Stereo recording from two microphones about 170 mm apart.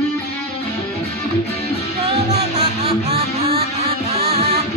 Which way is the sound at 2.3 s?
40° right (ahead or behind).